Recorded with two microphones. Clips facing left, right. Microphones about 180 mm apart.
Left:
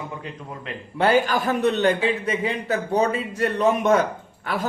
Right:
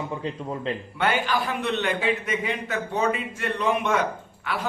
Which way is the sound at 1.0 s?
35° left (ahead or behind).